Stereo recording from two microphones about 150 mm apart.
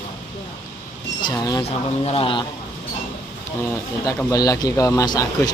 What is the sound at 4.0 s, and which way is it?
A man's voice, 20° left (ahead or behind).